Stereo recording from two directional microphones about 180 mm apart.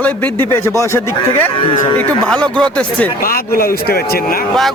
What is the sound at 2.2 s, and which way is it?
Speech, 5° left (ahead or behind).